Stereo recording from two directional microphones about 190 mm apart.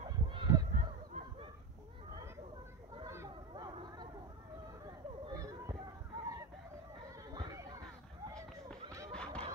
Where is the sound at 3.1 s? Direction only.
20° right (ahead or behind).